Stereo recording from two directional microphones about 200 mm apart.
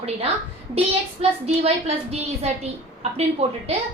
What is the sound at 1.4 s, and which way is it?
A woman's voice, 30° right (ahead or behind).